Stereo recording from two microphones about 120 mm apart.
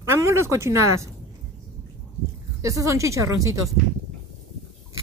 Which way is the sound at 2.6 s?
25° right (ahead or behind).